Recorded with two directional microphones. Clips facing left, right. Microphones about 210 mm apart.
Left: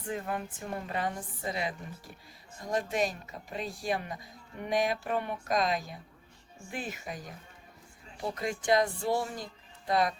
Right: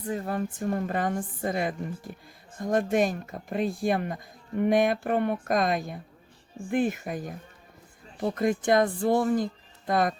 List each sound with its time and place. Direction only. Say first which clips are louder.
0.1 s speech: right 5 dB; 40° right (ahead or behind)